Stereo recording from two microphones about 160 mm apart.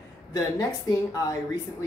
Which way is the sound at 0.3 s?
25° left (ahead or behind).